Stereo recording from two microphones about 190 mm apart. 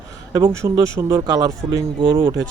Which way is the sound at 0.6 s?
15° right (ahead or behind).